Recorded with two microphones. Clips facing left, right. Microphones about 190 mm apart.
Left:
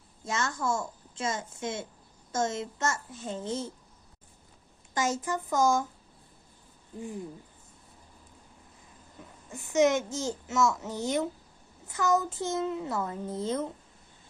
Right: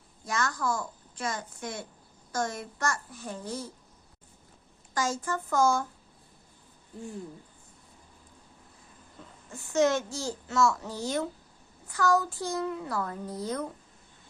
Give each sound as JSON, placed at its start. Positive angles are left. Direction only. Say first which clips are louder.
{"t": 0.3, "sound": "a child's voice", "louder": "even", "side_deg": 25}
{"t": 4.9, "sound": "a child's voice", "louder": "left 1 dB", "side_deg": 20}
{"t": 9.5, "sound": "a child's voice", "louder": "left 1 dB", "side_deg": 20}